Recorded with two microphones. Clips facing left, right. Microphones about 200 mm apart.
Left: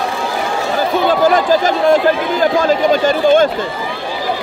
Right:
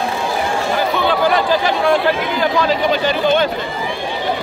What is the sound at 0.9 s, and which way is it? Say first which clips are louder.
Speech: left 5 dB; 45° left (ahead or behind).